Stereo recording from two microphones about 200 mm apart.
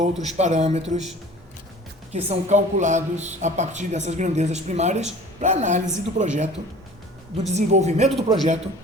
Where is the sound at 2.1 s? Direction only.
35° right (ahead or behind).